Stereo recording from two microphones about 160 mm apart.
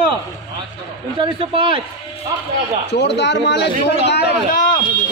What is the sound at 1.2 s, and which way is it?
Speech, 30° right (ahead or behind).